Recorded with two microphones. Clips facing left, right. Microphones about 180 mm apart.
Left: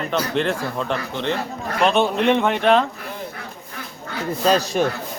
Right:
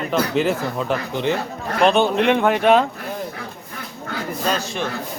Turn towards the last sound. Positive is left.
turn(degrees=40)  # may be behind; listen again after turning